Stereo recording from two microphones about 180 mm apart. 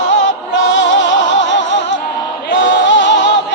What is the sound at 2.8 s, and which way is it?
Music, 90° left.